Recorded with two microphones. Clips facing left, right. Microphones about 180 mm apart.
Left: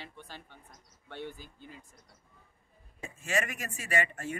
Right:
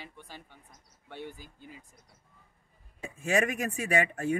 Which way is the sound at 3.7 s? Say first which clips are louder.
Right 4 dB; 60° right (ahead or behind).